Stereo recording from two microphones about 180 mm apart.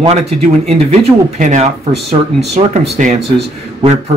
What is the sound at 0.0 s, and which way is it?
Speech, 35° right (ahead or behind).